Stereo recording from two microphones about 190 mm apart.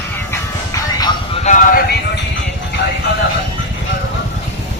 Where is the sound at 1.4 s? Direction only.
40° left (ahead or behind).